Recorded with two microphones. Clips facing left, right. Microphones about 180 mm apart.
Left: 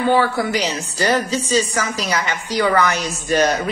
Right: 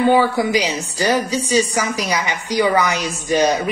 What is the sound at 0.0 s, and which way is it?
A woman's voice, 15° right (ahead or behind).